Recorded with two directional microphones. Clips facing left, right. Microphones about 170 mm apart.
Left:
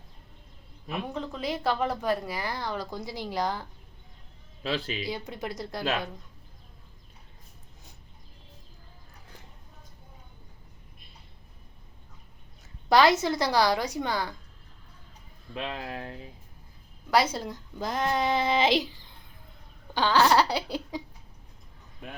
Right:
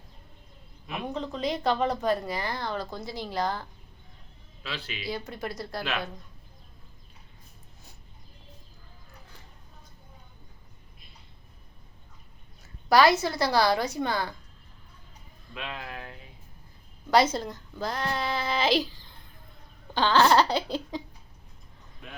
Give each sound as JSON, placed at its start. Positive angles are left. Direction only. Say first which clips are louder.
{"t": 1.1, "sound": "a woman's voice", "louder": "right 4 dB", "side_deg": 5}
{"t": 4.6, "sound": "speech", "louder": "left 7 dB", "side_deg": 45}
{"t": 5.0, "sound": "a woman's voice", "louder": "even", "side_deg": 15}
{"t": 5.8, "sound": "speech", "louder": "left 3 dB", "side_deg": 40}
{"t": 12.9, "sound": "a woman's voice", "louder": "even", "side_deg": 20}
{"t": 15.5, "sound": "speech", "louder": "left 4 dB", "side_deg": 35}
{"t": 17.1, "sound": "speech", "louder": "right 2 dB", "side_deg": 5}
{"t": 19.9, "sound": "a woman's voice", "louder": "right 1 dB", "side_deg": 10}